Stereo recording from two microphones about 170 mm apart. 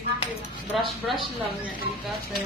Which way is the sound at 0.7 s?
Centre (ahead or behind).